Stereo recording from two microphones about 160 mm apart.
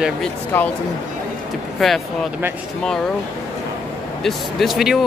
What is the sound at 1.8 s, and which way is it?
Speech, centre (ahead or behind).